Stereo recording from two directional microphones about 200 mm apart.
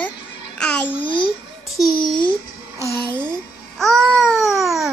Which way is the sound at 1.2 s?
Centre (ahead or behind).